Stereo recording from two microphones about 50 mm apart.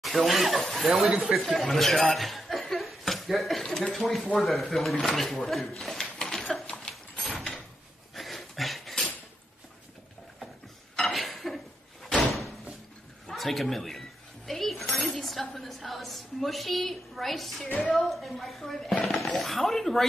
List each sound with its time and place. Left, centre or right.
0.0 s a woman's voice: centre
1.4 s cough: centre
3.9 s a woman's voice: centre
6.0 s a sound: centre
8.1 s dog: centre
11.0 s a sound: centre
12.4 s door: centre
13.3 s a sound: centre
15.6 s a woman's voice: centre
17.6 s a woman's voice: left
17.9 s a woman's voice: centre